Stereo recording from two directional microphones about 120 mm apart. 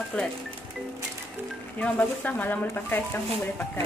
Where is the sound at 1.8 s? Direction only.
15° left (ahead or behind).